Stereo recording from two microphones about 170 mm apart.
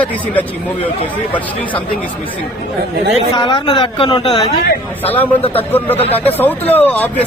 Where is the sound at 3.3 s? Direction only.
30° left (ahead or behind).